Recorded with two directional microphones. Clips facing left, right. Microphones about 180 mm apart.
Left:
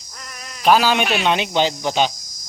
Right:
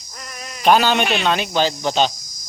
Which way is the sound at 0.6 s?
5° left (ahead or behind).